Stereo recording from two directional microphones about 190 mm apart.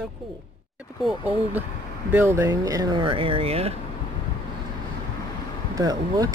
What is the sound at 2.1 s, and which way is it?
Speech, 15° right (ahead or behind).